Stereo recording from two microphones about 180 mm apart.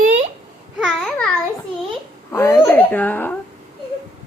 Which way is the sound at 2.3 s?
15° left (ahead or behind).